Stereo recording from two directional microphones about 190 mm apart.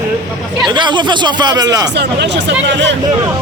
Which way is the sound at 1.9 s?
65° right (ahead or behind).